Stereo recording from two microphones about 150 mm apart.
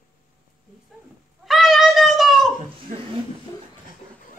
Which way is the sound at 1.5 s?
Centre (ahead or behind).